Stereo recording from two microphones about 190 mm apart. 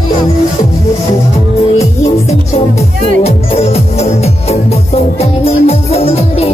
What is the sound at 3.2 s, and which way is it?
Music, 35° left (ahead or behind).